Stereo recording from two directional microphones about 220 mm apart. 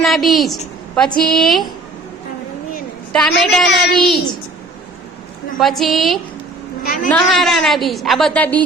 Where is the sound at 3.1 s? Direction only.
Centre (ahead or behind).